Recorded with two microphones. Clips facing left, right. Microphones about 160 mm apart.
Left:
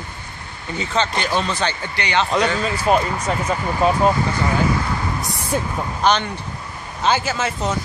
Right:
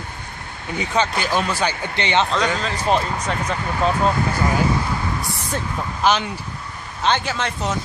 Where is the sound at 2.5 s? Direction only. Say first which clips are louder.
Left 2 dB; 5° left (ahead or behind).